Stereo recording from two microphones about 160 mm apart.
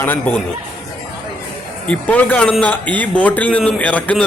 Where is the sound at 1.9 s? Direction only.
10° left (ahead or behind).